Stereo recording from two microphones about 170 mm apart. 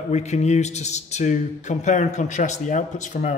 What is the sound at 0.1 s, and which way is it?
Speech, 40° left (ahead or behind).